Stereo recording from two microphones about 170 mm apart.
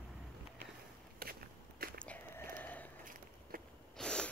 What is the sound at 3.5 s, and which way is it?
Biting, 55° right (ahead or behind).